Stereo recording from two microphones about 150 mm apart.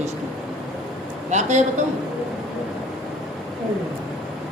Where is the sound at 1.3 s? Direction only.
50° right (ahead or behind).